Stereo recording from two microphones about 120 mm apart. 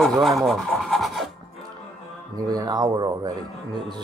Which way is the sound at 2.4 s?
30° right (ahead or behind).